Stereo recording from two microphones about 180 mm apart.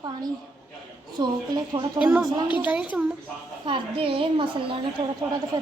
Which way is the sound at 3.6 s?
30° right (ahead or behind).